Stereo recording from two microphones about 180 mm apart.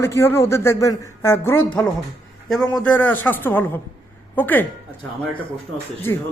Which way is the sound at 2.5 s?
Centre (ahead or behind).